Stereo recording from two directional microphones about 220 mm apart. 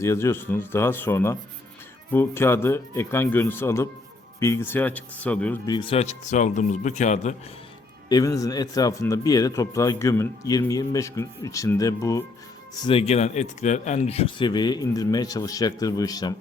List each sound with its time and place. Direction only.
0.0 s speech: 15° left (ahead or behind)
5.6 s speech: 20° left (ahead or behind)
8.1 s speech: 15° left (ahead or behind)
12.8 s speech: 25° left (ahead or behind)